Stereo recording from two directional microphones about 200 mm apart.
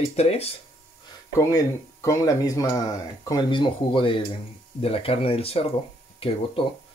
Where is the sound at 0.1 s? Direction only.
30° left (ahead or behind).